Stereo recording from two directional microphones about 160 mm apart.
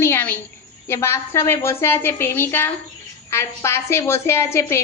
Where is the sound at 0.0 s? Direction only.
15° left (ahead or behind).